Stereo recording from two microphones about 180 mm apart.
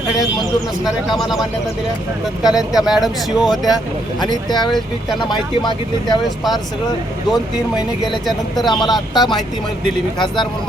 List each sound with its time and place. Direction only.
0.9 s speech: centre (ahead or behind)
2.4 s speech: 20° left (ahead or behind)
2.7 s speech: centre (ahead or behind)
4.2 s speech: 25° left (ahead or behind)
8.0 s speech: centre (ahead or behind)
8.6 s speech: 25° left (ahead or behind)